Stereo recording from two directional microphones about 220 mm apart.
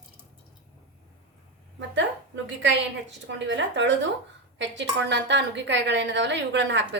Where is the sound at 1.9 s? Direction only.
55° right (ahead or behind).